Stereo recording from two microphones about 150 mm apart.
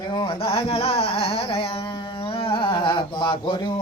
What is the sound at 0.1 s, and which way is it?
Carnatic music, 35° left (ahead or behind).